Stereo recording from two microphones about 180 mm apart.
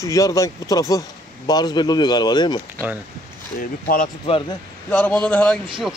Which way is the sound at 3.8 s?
50° left (ahead or behind).